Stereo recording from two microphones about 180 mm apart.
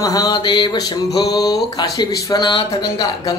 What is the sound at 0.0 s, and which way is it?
Speech, 20° left (ahead or behind).